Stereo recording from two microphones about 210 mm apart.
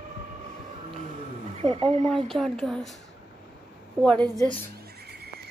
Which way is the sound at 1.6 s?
30° right (ahead or behind).